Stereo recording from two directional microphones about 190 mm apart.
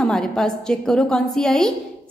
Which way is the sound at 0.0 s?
5° left (ahead or behind).